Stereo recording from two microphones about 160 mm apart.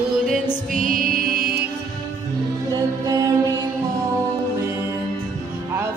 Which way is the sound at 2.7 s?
20° right (ahead or behind).